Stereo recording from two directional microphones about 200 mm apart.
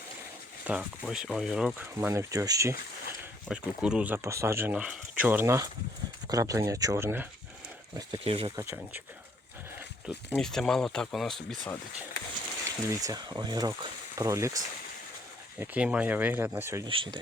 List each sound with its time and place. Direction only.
0.7 s speech: 5° right (ahead or behind)
3.5 s speech: 5° right (ahead or behind)
7.9 s speech: 25° right (ahead or behind)
8.5 s speech: 10° right (ahead or behind)
10.2 s speech: 5° left (ahead or behind)
12.6 s speech: 15° right (ahead or behind)
16.9 s speech: 25° right (ahead or behind)